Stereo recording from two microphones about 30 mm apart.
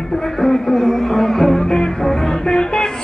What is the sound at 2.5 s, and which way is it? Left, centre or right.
Music, left.